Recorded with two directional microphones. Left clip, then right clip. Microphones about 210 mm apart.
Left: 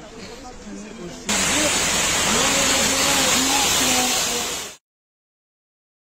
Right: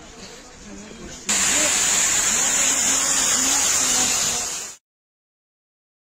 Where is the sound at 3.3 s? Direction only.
40° left (ahead or behind).